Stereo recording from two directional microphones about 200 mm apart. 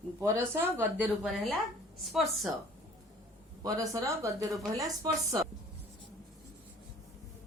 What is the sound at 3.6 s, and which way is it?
Speech, 15° right (ahead or behind).